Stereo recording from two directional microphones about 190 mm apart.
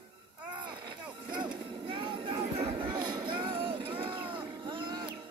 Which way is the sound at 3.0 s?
25° right (ahead or behind).